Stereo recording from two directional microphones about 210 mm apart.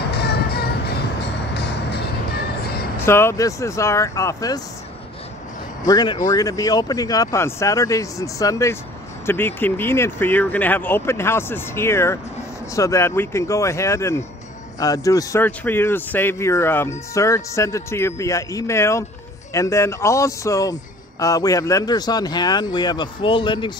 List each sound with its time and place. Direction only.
0.1 s music: 50° left (ahead or behind)
3.1 s speech: 10° left (ahead or behind)
5.9 s speech: 20° left (ahead or behind)